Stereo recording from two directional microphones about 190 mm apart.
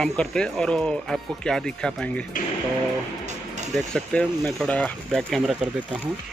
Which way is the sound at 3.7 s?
5° left (ahead or behind).